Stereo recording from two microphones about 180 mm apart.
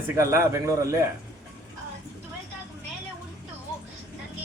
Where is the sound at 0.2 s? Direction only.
15° right (ahead or behind).